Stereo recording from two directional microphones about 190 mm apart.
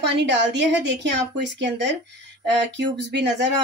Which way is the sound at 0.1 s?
65° right (ahead or behind).